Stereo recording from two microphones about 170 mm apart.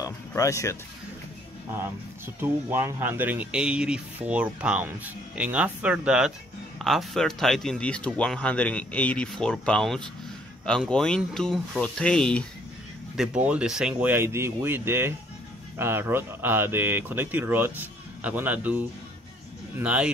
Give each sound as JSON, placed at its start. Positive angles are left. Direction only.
{"t": 0.0, "sound": "music", "side_deg": 20}
{"t": 2.4, "sound": "speech", "side_deg": -15}